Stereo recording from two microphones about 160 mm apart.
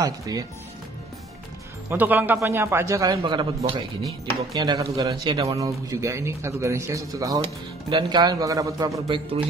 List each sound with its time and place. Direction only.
0.0 s speech: 20° right (ahead or behind)
1.9 s a man's voice: 10° right (ahead or behind); by 9.4 s 30° right (ahead or behind)